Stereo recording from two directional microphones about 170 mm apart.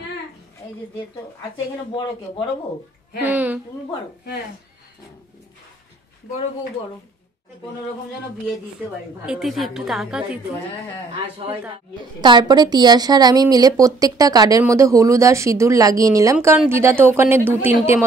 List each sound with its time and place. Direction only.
3.2 s speech: 10° right (ahead or behind)
9.2 s a woman's voice: 5° right (ahead or behind)
12.2 s a woman's voice: 25° right (ahead or behind)